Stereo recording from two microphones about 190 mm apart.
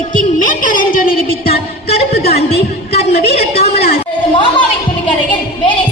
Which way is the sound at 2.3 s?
30° left (ahead or behind).